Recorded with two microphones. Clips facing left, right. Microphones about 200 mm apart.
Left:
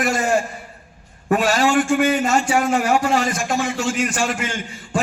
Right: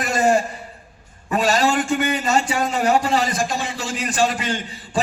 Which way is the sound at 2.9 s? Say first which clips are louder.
Left 1 dB; 35° right (ahead or behind).